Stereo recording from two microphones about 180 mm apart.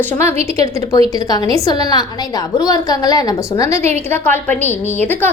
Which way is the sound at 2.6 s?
20° left (ahead or behind).